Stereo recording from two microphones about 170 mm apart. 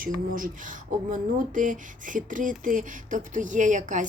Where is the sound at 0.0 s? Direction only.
55° right (ahead or behind).